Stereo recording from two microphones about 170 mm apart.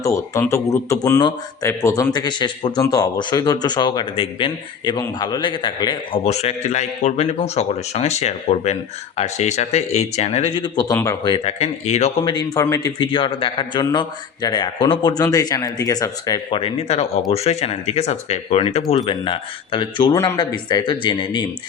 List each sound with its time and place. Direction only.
0.0 s a man's voice: 15° left (ahead or behind)
11.6 s speech: 40° left (ahead or behind)
12.2 s a man's voice: 25° left (ahead or behind)